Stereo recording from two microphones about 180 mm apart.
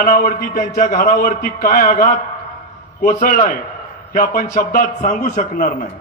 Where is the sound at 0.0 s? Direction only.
45° left (ahead or behind).